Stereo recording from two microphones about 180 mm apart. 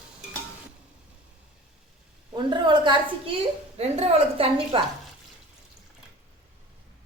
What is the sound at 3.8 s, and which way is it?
A woman's voice, 35° right (ahead or behind).